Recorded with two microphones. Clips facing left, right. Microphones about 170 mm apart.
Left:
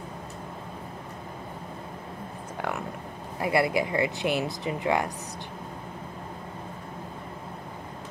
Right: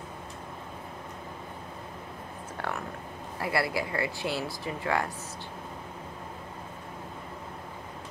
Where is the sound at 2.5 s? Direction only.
15° left (ahead or behind).